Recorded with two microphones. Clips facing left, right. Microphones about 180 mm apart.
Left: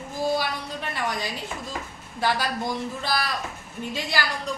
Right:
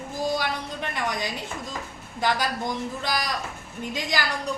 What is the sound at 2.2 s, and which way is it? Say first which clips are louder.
A woman's voice: even; 15° right (ahead or behind).